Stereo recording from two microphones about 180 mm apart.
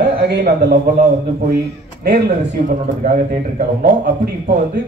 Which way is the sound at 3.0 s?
50° right (ahead or behind).